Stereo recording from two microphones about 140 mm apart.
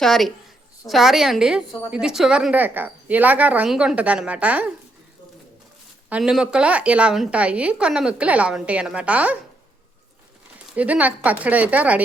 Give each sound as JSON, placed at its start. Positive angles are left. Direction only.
{"t": 0.0, "sound": "a woman's voice", "side_deg": 0}
{"t": 6.1, "sound": "a woman's voice", "side_deg": -5}
{"t": 10.8, "sound": "a woman's voice", "side_deg": -10}